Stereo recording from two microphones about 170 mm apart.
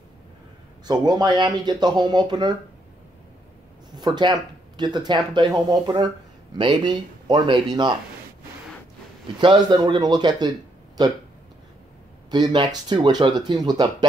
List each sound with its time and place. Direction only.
0.8 s speech: 25° right (ahead or behind)
3.9 s speech: 25° right (ahead or behind)
9.4 s speech: 25° right (ahead or behind)
12.3 s speech: 25° right (ahead or behind)